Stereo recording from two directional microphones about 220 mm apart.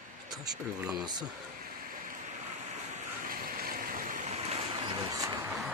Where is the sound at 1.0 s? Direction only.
20° right (ahead or behind).